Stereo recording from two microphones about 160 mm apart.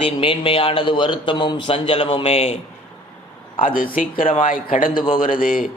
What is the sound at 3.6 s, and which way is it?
Speech, 60° left (ahead or behind).